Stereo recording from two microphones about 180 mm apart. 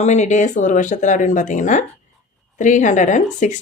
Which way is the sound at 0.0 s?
40° left (ahead or behind).